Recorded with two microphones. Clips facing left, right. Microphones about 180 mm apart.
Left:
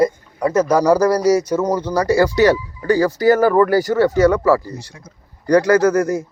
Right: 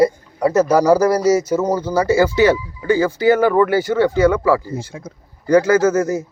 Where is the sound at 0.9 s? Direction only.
25° right (ahead or behind).